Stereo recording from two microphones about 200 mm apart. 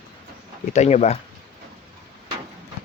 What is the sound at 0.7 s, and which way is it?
Speech, 35° left (ahead or behind).